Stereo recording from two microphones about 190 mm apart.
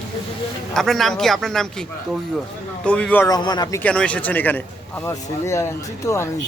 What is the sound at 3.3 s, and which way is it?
Speech, 20° left (ahead or behind).